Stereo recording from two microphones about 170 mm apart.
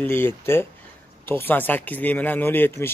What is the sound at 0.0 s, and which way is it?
Speech, 15° left (ahead or behind).